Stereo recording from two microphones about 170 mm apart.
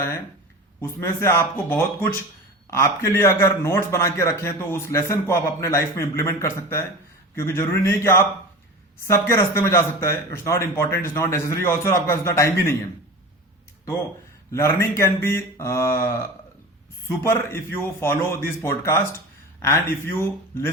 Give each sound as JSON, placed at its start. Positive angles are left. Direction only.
{"t": 0.8, "sound": "a man's voice", "side_deg": 15}
{"t": 14.5, "sound": "a man's voice", "side_deg": 15}